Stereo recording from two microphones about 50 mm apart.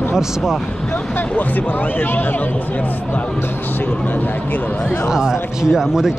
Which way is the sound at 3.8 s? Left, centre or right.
Left.